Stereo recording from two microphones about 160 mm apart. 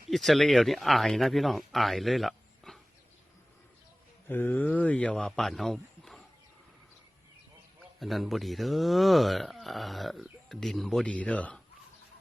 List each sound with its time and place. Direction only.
0.1 s speech: centre (ahead or behind)
4.3 s a man's voice: 15° left (ahead or behind)
7.9 s speech: centre (ahead or behind)